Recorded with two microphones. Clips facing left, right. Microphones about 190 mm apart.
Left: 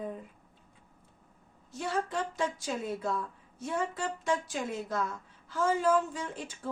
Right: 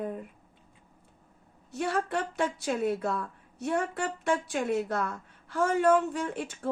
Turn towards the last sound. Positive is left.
turn(degrees=-65)  # may be behind; listen again after turning